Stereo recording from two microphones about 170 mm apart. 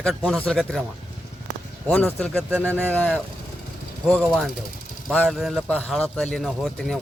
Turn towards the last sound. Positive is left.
turn(degrees=0)  # may be behind; listen again after turning